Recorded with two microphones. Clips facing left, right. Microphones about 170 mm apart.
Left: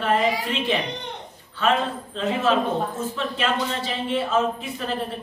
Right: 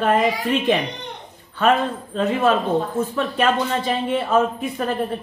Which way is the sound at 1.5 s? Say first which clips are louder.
Right 4 dB; 50° right (ahead or behind).